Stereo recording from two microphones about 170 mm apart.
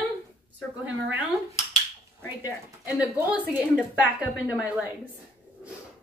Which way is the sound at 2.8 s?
10° right (ahead or behind).